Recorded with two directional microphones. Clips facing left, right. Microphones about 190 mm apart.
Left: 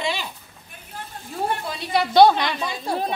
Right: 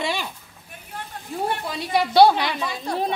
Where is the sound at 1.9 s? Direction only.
10° right (ahead or behind).